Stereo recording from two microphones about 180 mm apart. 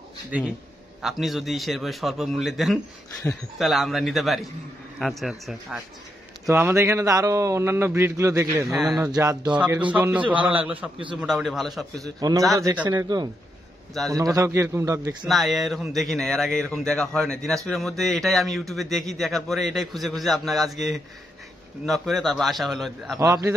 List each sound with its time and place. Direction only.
0.3 s a man's voice: 5° right (ahead or behind)
6.4 s a man's voice: 15° right (ahead or behind)
8.6 s speech: 5° right (ahead or behind)
9.0 s a man's voice: 20° right (ahead or behind)
9.5 s a man's voice: 5° right (ahead or behind)
12.2 s a man's voice: 20° right (ahead or behind)
15.2 s speech: centre (ahead or behind)
23.1 s a man's voice: 20° right (ahead or behind)